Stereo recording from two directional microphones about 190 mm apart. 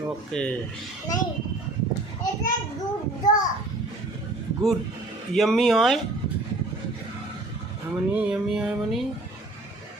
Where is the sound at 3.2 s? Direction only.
20° left (ahead or behind).